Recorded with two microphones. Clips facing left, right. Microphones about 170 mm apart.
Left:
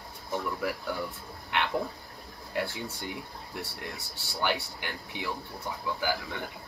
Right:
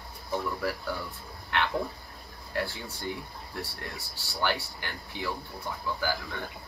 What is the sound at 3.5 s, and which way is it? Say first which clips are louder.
Speech: even; 20° left (ahead or behind).